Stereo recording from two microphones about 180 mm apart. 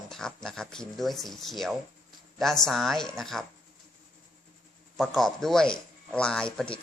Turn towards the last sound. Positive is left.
turn(degrees=5)  # may be behind; listen again after turning